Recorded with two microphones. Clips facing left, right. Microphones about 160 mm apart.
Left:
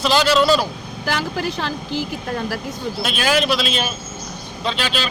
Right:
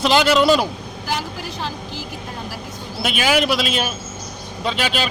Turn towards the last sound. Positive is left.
turn(degrees=-10)  # may be behind; listen again after turning